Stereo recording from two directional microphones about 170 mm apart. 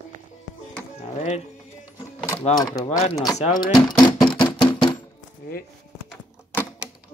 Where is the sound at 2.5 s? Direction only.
25° left (ahead or behind).